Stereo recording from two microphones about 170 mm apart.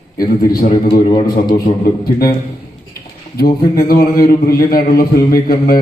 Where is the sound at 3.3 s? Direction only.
60° left (ahead or behind).